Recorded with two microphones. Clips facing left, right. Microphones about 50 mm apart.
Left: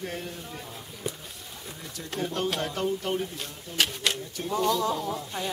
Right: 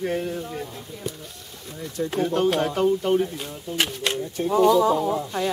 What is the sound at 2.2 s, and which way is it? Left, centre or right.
Speech, centre.